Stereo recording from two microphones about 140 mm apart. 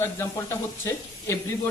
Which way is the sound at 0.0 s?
20° left (ahead or behind).